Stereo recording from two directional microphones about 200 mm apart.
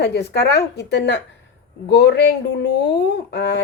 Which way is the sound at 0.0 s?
55° left (ahead or behind).